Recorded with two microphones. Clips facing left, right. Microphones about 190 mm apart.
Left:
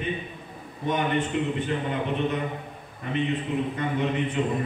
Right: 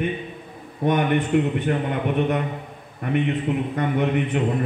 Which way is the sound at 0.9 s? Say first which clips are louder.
Right 5 dB; 60° right (ahead or behind).